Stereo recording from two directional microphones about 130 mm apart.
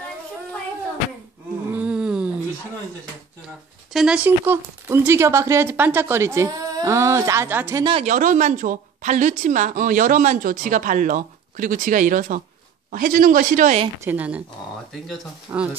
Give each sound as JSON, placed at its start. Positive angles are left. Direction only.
{"t": 1.7, "sound": "a sound", "side_deg": -10}
{"t": 3.9, "sound": "speech", "side_deg": -5}
{"t": 4.5, "sound": "a woman's voice", "side_deg": -15}
{"t": 8.0, "sound": "a woman's voice", "side_deg": -75}
{"t": 14.0, "sound": "speech", "side_deg": -10}
{"t": 15.5, "sound": "a woman's voice", "side_deg": -20}